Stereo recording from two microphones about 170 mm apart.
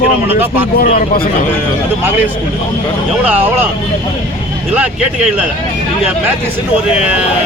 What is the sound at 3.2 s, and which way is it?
Speech, 10° right (ahead or behind).